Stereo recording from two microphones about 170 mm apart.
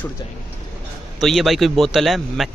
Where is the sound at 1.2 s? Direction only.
Centre (ahead or behind).